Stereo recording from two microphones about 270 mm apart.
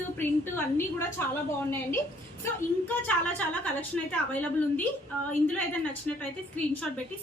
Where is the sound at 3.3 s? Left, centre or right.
Centre.